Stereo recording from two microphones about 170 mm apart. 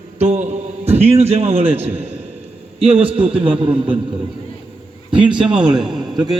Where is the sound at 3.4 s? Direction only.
30° right (ahead or behind).